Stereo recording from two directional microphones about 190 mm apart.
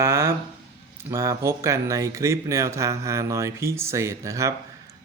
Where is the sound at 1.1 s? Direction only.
15° right (ahead or behind).